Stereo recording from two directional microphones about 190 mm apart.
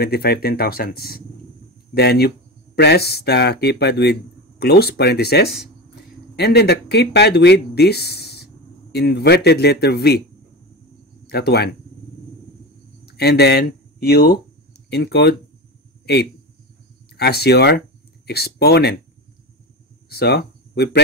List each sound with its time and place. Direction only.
0.0 s speech: 55° left (ahead or behind)
11.2 s speech: 60° left (ahead or behind)
13.0 s speech: 55° left (ahead or behind)
17.2 s speech: 60° left (ahead or behind)
20.1 s speech: 55° left (ahead or behind)